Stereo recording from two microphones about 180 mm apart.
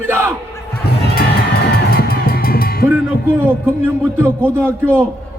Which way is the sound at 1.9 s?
60° left (ahead or behind).